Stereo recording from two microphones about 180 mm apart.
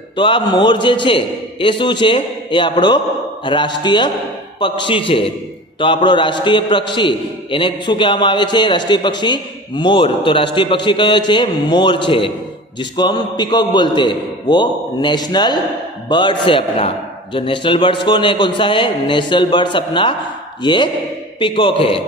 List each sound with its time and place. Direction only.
0.1 s a man's voice: 25° left (ahead or behind)